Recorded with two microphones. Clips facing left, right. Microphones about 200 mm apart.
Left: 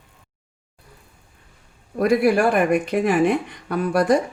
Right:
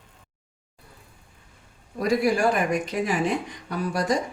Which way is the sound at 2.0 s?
60° left (ahead or behind).